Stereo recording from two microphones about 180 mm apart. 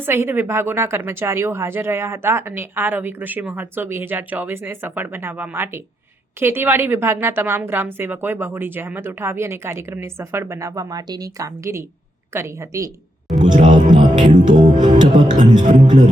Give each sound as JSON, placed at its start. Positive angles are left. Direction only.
{"t": 0.0, "sound": "a woman's voice", "side_deg": -10}
{"t": 13.6, "sound": "music", "side_deg": -45}
{"t": 14.9, "sound": "music", "side_deg": -25}
{"t": 15.6, "sound": "music", "side_deg": -45}